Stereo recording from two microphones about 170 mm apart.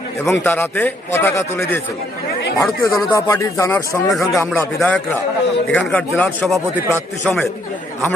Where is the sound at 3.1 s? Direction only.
15° left (ahead or behind); by 6.6 s centre (ahead or behind).